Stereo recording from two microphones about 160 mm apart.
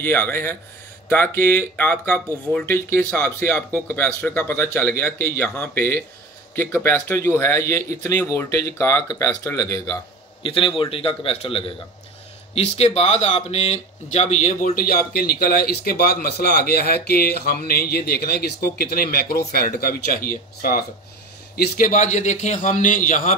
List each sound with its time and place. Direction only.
0.0 s speech: 10° left (ahead or behind)
10.4 s a man's voice: 35° left (ahead or behind); by 23.3 s 55° left (ahead or behind)